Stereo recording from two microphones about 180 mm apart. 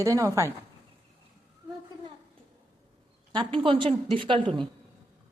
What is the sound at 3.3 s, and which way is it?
A woman's voice, 25° right (ahead or behind).